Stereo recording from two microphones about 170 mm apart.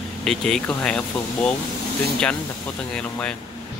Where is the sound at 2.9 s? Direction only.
5° left (ahead or behind).